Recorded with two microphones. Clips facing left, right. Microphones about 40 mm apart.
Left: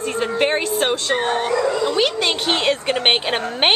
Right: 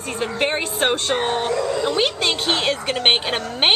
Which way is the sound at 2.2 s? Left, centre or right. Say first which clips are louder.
Left 1 dB; centre.